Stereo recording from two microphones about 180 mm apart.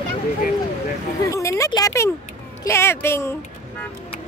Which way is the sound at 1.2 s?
15° left (ahead or behind).